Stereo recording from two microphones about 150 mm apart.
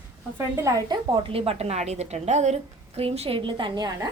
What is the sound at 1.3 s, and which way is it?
A woman's voice, 40° right (ahead or behind).